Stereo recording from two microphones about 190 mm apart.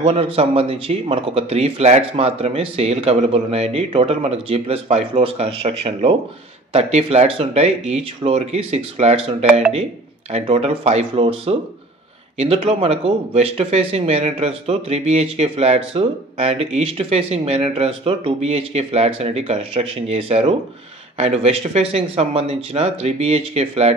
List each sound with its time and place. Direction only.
0.0 s speech: 30° right (ahead or behind)